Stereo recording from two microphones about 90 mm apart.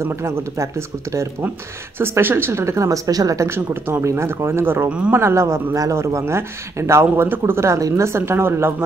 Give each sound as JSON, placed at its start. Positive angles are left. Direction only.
{"t": 0.0, "sound": "a man's voice", "side_deg": -30}
{"t": 4.8, "sound": "speech", "side_deg": -15}
{"t": 5.1, "sound": "a man's voice", "side_deg": -30}